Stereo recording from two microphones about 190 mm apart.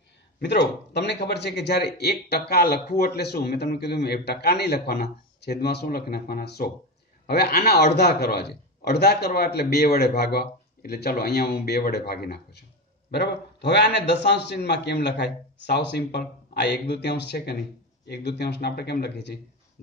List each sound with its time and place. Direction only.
0.4 s a man's voice: 65° left (ahead or behind)